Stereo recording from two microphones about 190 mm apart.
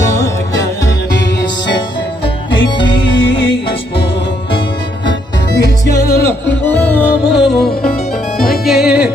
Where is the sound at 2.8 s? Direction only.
70° left (ahead or behind).